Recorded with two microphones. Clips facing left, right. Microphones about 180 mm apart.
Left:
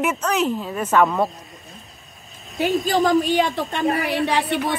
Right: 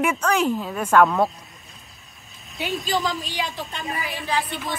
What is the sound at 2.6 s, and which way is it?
A woman's voice, 55° left (ahead or behind).